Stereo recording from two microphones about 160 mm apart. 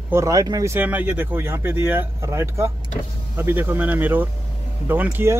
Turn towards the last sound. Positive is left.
turn(degrees=-15)  # may be behind; listen again after turning